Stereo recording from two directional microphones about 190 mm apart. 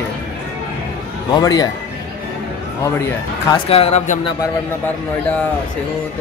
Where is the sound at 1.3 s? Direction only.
20° left (ahead or behind).